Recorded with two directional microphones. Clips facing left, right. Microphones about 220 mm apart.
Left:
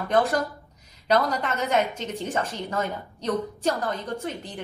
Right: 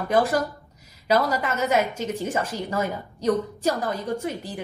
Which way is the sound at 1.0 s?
5° right (ahead or behind).